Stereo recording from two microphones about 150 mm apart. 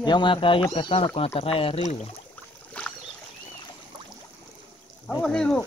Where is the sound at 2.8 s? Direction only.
10° left (ahead or behind).